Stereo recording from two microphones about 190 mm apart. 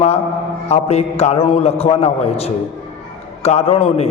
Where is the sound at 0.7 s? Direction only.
35° left (ahead or behind).